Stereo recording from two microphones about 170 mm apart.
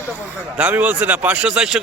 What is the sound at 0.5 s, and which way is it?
Speech, 10° right (ahead or behind).